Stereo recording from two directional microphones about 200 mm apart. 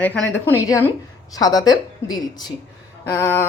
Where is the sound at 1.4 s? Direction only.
20° left (ahead or behind).